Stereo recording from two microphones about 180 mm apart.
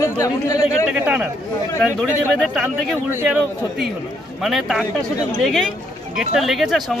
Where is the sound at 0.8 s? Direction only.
5° right (ahead or behind).